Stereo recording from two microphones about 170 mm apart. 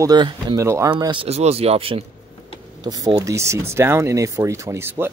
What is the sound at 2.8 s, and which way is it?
Speech, 20° right (ahead or behind).